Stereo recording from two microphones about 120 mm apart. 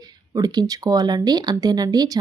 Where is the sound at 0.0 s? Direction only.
35° right (ahead or behind).